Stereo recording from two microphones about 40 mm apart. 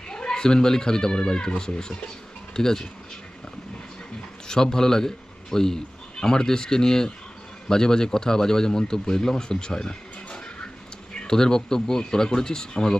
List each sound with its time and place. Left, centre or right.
0.1 s speech: centre
4.4 s a man's voice: centre
11.1 s speech: centre